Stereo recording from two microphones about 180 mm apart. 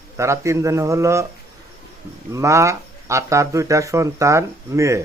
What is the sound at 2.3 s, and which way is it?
Speech, 15° right (ahead or behind).